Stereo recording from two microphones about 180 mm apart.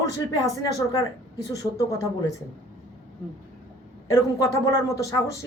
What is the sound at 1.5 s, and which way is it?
Speech, 20° left (ahead or behind).